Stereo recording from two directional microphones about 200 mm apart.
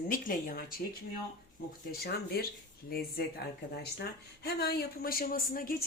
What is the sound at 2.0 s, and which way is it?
Speech, 50° left (ahead or behind).